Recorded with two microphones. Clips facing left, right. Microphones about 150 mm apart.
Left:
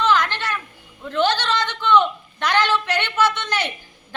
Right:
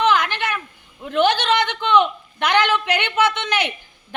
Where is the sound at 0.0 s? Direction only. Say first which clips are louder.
Right 1 dB; 15° right (ahead or behind).